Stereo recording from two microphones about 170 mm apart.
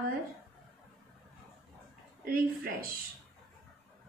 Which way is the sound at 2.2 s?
60° right (ahead or behind).